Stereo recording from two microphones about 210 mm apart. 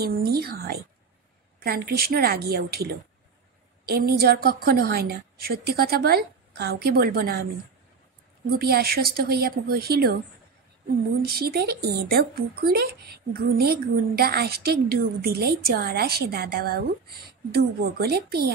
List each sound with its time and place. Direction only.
0.0 s speech: 50° right (ahead or behind)
8.5 s speech: 45° right (ahead or behind)
11.2 s speech: 45° right (ahead or behind)